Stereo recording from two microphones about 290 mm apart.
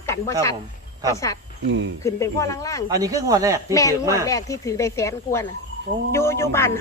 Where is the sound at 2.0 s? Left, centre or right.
Centre.